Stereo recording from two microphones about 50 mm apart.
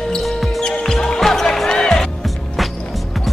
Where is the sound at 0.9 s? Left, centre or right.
Centre.